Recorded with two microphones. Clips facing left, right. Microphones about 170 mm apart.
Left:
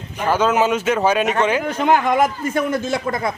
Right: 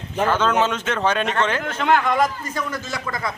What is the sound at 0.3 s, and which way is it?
Speech, 10° left (ahead or behind).